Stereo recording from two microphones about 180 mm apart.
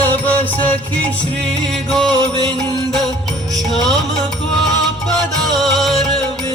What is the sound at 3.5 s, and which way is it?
Music, centre (ahead or behind).